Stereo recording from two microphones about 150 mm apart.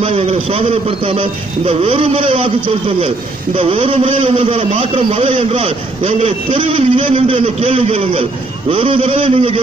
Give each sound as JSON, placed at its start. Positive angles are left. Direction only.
{"t": 0.0, "sound": "a man's voice", "side_deg": -40}